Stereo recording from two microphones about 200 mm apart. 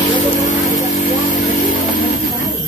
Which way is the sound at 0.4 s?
40° left (ahead or behind).